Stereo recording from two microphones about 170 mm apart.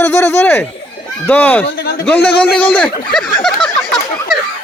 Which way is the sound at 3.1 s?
Centre (ahead or behind).